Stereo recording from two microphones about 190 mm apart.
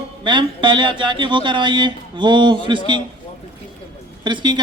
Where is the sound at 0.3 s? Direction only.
25° right (ahead or behind).